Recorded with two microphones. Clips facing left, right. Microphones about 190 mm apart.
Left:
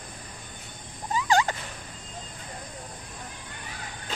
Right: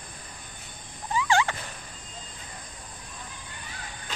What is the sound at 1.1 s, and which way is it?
Turkey, 40° left (ahead or behind).